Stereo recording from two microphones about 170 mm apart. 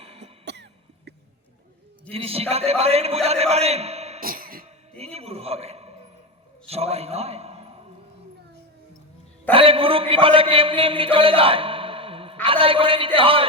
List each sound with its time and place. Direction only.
0.0 s cough: 35° right (ahead or behind)
0.4 s cough: 90° right
2.0 s a man's voice: 35° right (ahead or behind)
4.2 s cough: 60° right (ahead or behind)
4.6 s music: 35° right (ahead or behind)
6.7 s a sound: 35° right (ahead or behind)
9.5 s a man's voice: 35° right (ahead or behind)